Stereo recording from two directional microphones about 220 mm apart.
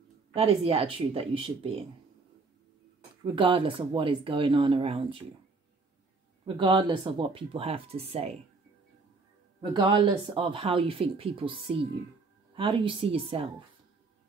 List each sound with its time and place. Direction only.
0.3 s speech: 25° right (ahead or behind)
3.3 s speech: 25° right (ahead or behind)
6.4 s speech: 20° right (ahead or behind)
9.6 s speech: 20° right (ahead or behind)